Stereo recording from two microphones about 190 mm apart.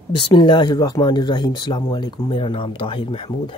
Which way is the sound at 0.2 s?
25° left (ahead or behind).